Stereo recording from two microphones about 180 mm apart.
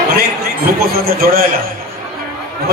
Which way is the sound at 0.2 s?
60° right (ahead or behind).